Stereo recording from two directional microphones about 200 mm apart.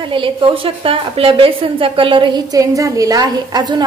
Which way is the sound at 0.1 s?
25° right (ahead or behind).